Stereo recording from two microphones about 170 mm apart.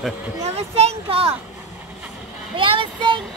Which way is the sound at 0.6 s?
35° right (ahead or behind).